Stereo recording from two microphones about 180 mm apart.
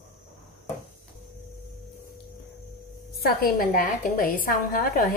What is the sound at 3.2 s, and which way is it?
A woman's voice, 55° left (ahead or behind).